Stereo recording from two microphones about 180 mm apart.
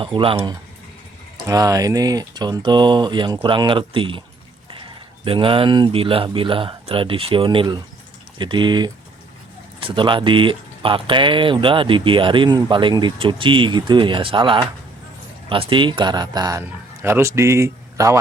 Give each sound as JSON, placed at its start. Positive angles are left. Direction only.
{"t": 0.0, "sound": "speech", "side_deg": -30}
{"t": 1.5, "sound": "speech", "side_deg": -20}
{"t": 5.2, "sound": "speech", "side_deg": -30}